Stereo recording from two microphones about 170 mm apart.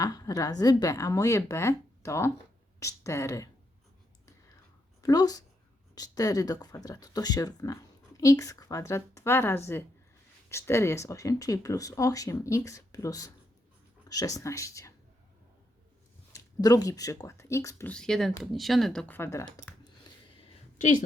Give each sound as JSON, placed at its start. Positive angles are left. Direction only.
{"t": 0.0, "sound": "speech", "side_deg": 20}
{"t": 5.0, "sound": "speech", "side_deg": 20}
{"t": 16.3, "sound": "speech", "side_deg": 20}
{"t": 17.9, "sound": "speech", "side_deg": 5}